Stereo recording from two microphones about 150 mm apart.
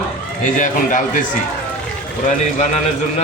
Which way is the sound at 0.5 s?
60° left (ahead or behind).